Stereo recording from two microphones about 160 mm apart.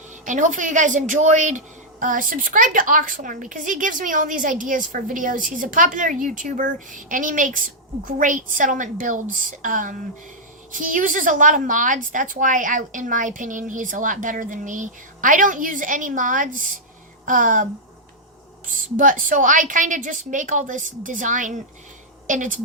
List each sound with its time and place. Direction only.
0.3 s a woman's voice: 50° right (ahead or behind)
18.7 s a woman's voice: 55° right (ahead or behind)